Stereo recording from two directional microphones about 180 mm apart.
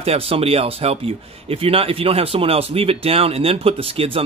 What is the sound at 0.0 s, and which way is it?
Speech, 35° right (ahead or behind).